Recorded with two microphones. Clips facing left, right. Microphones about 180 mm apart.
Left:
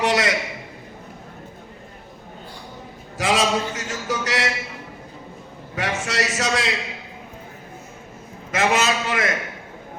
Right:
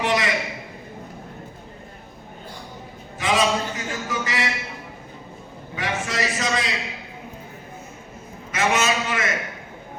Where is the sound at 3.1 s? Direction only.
85° left.